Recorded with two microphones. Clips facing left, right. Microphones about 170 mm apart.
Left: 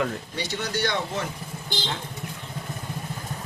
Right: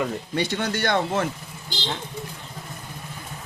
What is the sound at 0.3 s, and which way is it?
Speech, 55° right (ahead or behind).